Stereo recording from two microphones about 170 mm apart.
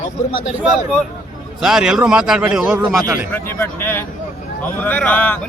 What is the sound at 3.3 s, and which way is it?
Speech, 10° left (ahead or behind).